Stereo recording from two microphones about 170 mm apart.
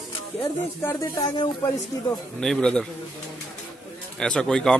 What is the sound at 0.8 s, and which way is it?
Speech, 15° left (ahead or behind).